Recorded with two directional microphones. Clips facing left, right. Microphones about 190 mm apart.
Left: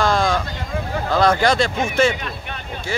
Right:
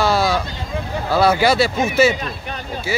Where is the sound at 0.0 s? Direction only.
5° right (ahead or behind).